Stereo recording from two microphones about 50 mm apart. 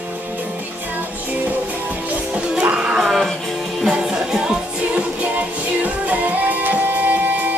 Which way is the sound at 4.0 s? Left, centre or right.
Centre.